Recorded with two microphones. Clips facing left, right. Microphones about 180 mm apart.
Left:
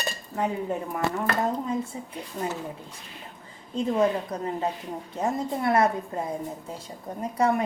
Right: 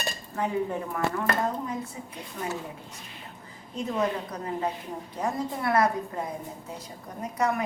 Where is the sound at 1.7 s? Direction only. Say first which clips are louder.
Left 5 dB; 25° left (ahead or behind).